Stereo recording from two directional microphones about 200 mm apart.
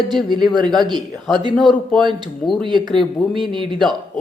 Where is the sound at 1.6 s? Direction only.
Centre (ahead or behind).